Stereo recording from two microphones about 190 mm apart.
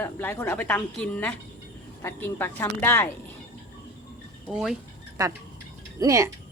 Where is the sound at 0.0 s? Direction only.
10° left (ahead or behind).